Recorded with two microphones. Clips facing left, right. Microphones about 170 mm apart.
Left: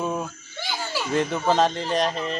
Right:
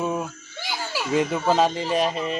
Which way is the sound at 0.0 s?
5° right (ahead or behind).